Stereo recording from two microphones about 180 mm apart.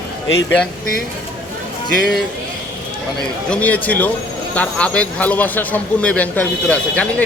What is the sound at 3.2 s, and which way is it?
Speech, 5° left (ahead or behind).